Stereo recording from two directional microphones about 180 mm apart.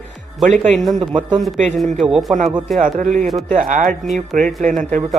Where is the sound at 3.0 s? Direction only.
45° right (ahead or behind).